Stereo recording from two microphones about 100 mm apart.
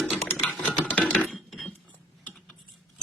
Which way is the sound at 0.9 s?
15° left (ahead or behind).